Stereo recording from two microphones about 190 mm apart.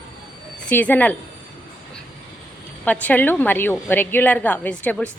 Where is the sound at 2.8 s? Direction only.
10° left (ahead or behind).